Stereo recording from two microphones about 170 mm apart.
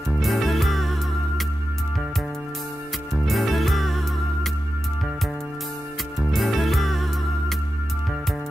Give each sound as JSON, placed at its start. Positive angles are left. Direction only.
{"t": 0.2, "sound": "music", "side_deg": 0}
{"t": 3.1, "sound": "music", "side_deg": 0}
{"t": 6.3, "sound": "music", "side_deg": 0}